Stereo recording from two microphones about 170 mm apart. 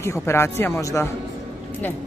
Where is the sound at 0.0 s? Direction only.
15° left (ahead or behind).